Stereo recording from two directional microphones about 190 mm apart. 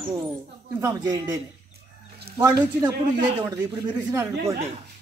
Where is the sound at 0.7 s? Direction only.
15° right (ahead or behind).